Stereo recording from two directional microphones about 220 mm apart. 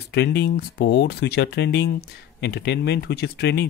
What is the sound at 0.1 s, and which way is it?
Speech, 50° left (ahead or behind).